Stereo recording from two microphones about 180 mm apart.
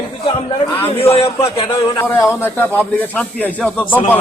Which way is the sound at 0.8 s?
30° left (ahead or behind).